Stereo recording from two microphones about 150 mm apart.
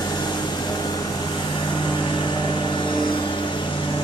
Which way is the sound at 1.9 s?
30° left (ahead or behind).